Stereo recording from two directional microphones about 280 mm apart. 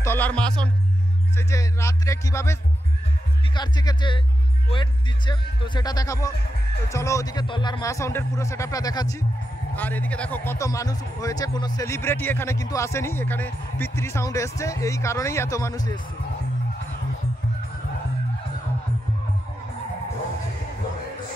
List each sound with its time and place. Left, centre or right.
0.0 s music: centre
1.3 s speech: centre